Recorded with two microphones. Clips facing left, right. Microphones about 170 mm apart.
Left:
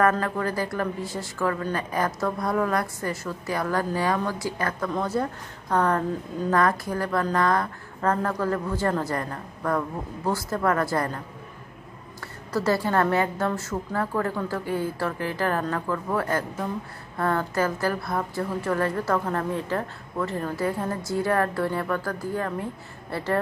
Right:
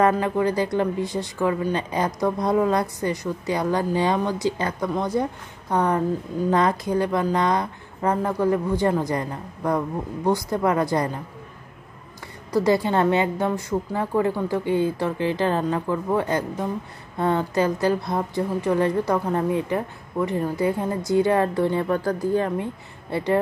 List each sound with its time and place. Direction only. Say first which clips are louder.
0.0 s a woman's voice: right 3 dB; 20° right (ahead or behind)
12.5 s a woman's voice: right 3 dB; 15° right (ahead or behind)